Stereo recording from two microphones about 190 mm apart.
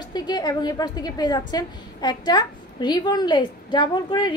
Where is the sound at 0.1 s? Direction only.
20° left (ahead or behind).